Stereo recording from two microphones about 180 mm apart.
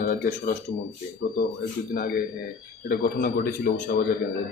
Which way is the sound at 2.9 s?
55° left (ahead or behind).